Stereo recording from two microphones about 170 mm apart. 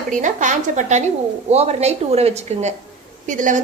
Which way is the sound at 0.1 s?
50° right (ahead or behind).